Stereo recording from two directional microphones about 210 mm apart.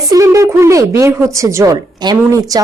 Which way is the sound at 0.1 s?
15° right (ahead or behind).